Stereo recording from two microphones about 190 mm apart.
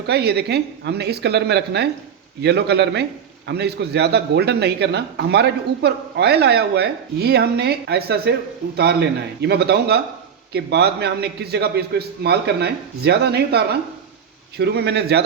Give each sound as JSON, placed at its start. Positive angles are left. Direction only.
{"t": 0.1, "sound": "a man's voice", "side_deg": -60}